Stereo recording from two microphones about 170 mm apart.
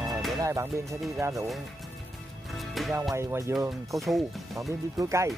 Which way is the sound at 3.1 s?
15° right (ahead or behind).